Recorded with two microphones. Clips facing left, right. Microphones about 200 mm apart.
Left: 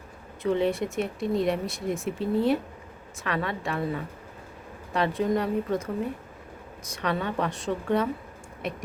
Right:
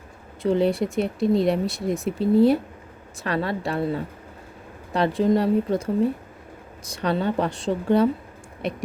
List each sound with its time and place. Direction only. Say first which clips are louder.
0.4 s speech: right 4 dB; 35° right (ahead or behind)
6.9 s speech: right 5 dB; 35° right (ahead or behind)